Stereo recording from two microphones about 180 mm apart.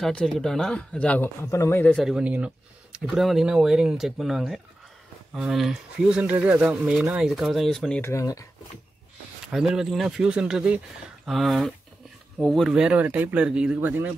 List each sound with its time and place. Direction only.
0.0 s speech: 5° left (ahead or behind)
2.0 s speech: 5° right (ahead or behind)
8.0 s speech: 15° left (ahead or behind)
9.5 s speech: centre (ahead or behind)